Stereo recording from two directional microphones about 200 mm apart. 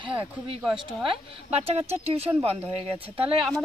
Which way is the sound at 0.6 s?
5° right (ahead or behind).